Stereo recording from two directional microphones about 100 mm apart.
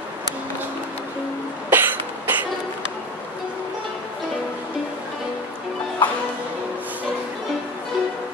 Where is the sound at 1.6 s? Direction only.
20° right (ahead or behind).